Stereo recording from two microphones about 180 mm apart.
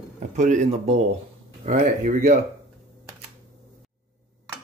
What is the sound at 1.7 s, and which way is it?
Speech, 50° right (ahead or behind).